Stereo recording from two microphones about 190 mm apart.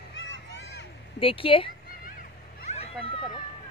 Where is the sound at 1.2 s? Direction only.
30° left (ahead or behind).